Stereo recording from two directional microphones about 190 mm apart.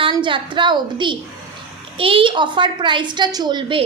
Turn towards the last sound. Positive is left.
turn(degrees=-25)  # may be behind; listen again after turning